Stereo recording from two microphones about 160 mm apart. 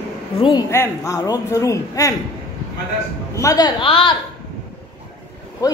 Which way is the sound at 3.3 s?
20° left (ahead or behind).